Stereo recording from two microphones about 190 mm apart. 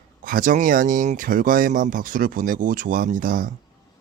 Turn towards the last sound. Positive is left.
turn(degrees=-45)  # may be behind; listen again after turning